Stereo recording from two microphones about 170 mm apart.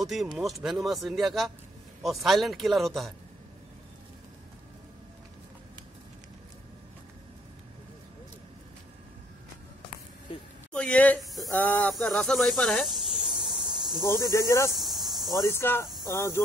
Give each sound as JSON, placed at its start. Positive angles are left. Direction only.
{"t": 0.0, "sound": "speech", "side_deg": 0}
{"t": 10.7, "sound": "speech", "side_deg": 5}
{"t": 14.3, "sound": "speech", "side_deg": 15}
{"t": 14.8, "sound": "cricket", "side_deg": 0}
{"t": 15.3, "sound": "speech", "side_deg": 15}